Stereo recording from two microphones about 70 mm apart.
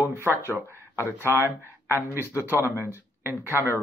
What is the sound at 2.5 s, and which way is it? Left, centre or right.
Speech, left.